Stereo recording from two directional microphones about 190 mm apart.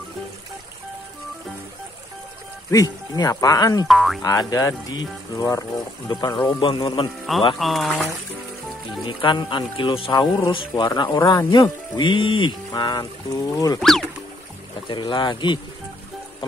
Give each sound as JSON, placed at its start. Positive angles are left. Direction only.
{"t": 2.7, "sound": "speech", "side_deg": 20}
{"t": 3.8, "sound": "speech", "side_deg": 0}
{"t": 4.2, "sound": "speech", "side_deg": 20}
{"t": 7.5, "sound": "speech", "side_deg": 0}
{"t": 9.0, "sound": "speech", "side_deg": 25}
{"t": 13.7, "sound": "speech", "side_deg": 0}
{"t": 14.9, "sound": "speech", "side_deg": 25}